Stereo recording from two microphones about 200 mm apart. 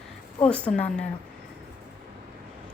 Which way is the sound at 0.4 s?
5° left (ahead or behind).